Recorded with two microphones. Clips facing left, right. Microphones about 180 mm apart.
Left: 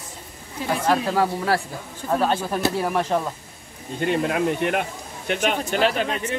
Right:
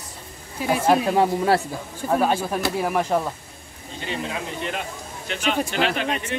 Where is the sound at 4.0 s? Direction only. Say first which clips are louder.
Left 8 dB; 55° left (ahead or behind).